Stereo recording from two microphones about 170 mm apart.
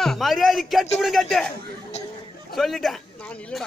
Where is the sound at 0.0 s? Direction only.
Centre (ahead or behind).